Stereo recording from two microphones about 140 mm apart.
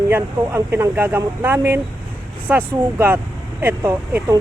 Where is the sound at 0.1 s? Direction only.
15° right (ahead or behind).